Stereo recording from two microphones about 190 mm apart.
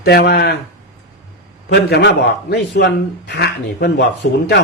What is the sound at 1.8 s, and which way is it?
A man's voice, 60° left (ahead or behind).